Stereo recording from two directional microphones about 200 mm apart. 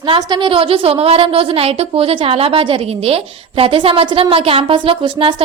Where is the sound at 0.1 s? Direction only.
25° right (ahead or behind).